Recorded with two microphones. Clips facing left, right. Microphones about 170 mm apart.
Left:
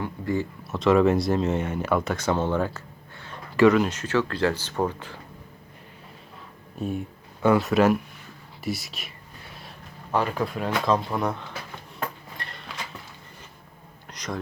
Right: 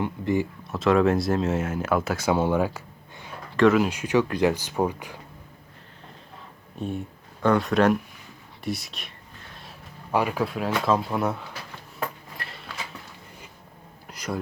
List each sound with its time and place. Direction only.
0.0 s speech: 20° right (ahead or behind)
0.7 s speech: centre (ahead or behind)
6.7 s speech: 5° left (ahead or behind)
10.1 s speech: 10° right (ahead or behind)
12.4 s a sound: 5° right (ahead or behind)
14.1 s a sound: 10° right (ahead or behind)